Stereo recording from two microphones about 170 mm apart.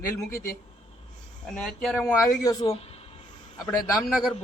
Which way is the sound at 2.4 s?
20° left (ahead or behind).